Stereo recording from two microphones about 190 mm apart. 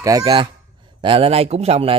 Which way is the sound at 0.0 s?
20° right (ahead or behind).